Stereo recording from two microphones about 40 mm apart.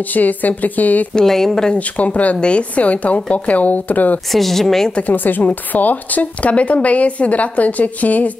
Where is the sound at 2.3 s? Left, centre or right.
Left.